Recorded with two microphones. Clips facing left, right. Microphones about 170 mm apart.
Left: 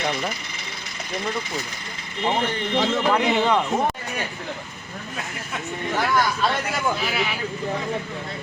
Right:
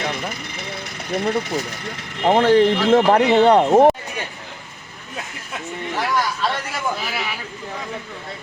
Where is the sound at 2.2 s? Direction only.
80° right.